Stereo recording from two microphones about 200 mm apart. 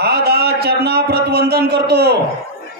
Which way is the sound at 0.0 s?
55° right (ahead or behind).